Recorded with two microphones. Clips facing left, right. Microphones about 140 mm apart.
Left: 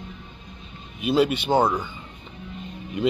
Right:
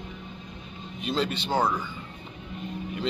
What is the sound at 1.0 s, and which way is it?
Speech, 10° left (ahead or behind).